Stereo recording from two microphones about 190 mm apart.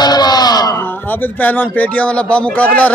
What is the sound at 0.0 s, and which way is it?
Speech, 20° left (ahead or behind).